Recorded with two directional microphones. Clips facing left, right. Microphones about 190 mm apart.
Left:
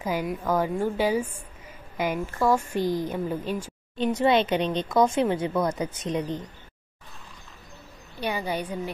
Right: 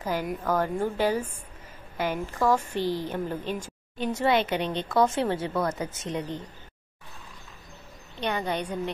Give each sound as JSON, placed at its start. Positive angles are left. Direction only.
{"t": 0.0, "sound": "speech", "side_deg": 10}
{"t": 2.4, "sound": "speech", "side_deg": 10}
{"t": 4.0, "sound": "speech", "side_deg": 20}
{"t": 8.2, "sound": "speech", "side_deg": 10}